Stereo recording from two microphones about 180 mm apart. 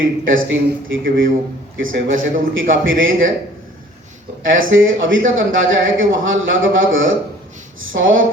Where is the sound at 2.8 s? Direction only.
90° right.